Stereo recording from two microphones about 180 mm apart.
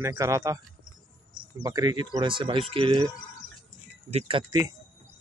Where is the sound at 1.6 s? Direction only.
25° right (ahead or behind).